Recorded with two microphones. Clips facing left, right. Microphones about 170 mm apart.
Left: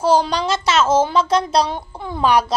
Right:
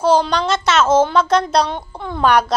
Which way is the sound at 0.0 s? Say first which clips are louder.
Right 1 dB; 5° left (ahead or behind).